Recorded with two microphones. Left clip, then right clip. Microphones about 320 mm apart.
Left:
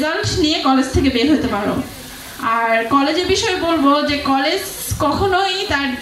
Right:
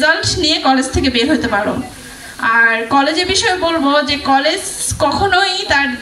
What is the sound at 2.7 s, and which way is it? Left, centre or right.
A woman's voice, right.